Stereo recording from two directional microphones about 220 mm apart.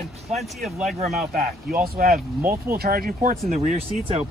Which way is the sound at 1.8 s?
45° right (ahead or behind).